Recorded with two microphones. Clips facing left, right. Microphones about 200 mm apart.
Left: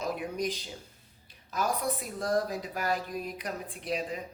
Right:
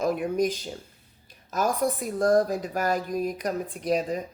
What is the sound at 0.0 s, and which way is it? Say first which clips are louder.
A woman's voice: right 8 dB; 50° right (ahead or behind).